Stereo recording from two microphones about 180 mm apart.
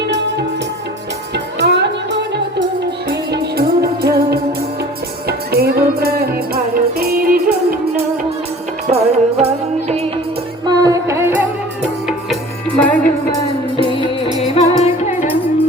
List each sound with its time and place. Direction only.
1.5 s music: 70° right (ahead or behind)
3.1 s music: 60° right (ahead or behind)
5.5 s music: 60° right (ahead or behind)
8.9 s music: 35° right (ahead or behind)
10.7 s music: 20° right (ahead or behind); by 13.0 s 5° left (ahead or behind)
13.8 s music: 30° left (ahead or behind)